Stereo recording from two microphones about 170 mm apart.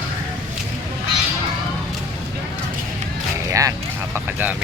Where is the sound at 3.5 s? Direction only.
20° right (ahead or behind).